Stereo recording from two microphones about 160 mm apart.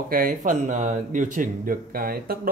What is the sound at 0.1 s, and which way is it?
Speech, 60° right (ahead or behind).